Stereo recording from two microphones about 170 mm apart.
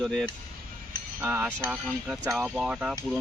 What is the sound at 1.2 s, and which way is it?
Speech, 10° right (ahead or behind).